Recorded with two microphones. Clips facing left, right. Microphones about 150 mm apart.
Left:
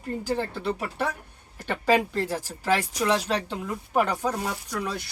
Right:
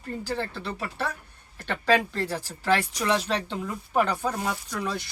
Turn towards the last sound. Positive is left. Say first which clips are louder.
# right 1 dB
turn(degrees=5)  # may be behind; listen again after turning